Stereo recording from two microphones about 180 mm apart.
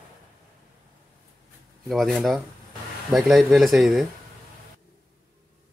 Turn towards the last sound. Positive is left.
turn(degrees=0)  # may be behind; listen again after turning